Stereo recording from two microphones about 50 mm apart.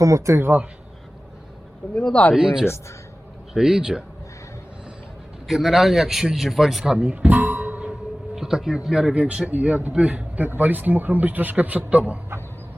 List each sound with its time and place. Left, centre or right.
0.0 s speech: right
2.3 s speech: centre
5.5 s a man's voice: centre
6.8 s speech: right
7.3 s music: right
8.4 s speech: centre
9.1 s speech: right
9.5 s speech: right